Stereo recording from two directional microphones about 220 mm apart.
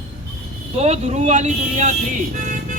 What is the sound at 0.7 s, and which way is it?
Speech, 30° right (ahead or behind).